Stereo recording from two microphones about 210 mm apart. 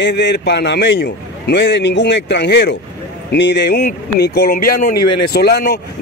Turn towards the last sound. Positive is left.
turn(degrees=50)  # may be behind; listen again after turning